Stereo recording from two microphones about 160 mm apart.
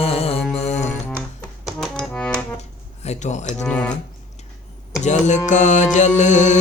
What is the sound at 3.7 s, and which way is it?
Speech, 5° left (ahead or behind).